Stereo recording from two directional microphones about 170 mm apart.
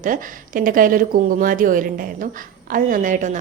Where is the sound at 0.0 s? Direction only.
50° right (ahead or behind).